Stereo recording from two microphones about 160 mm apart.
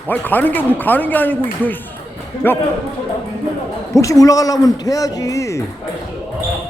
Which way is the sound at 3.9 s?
20° left (ahead or behind).